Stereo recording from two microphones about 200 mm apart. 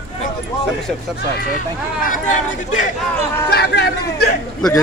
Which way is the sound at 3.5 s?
55° left (ahead or behind).